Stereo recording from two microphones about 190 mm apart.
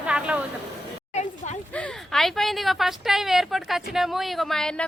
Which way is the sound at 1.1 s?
35° left (ahead or behind).